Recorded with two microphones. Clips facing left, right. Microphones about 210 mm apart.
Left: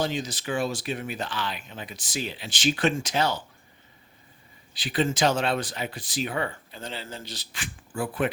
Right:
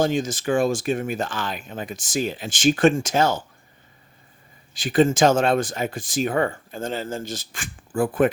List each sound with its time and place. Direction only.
0.0 s speech: 50° right (ahead or behind)
4.7 s speech: 45° right (ahead or behind)